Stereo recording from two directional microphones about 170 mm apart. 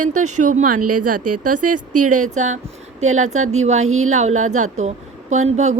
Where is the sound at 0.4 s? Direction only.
50° right (ahead or behind).